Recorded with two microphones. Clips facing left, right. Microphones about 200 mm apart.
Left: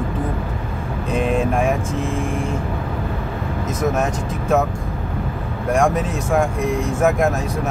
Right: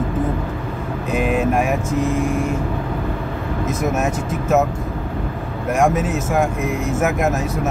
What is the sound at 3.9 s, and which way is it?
Vehicle, 5° right (ahead or behind).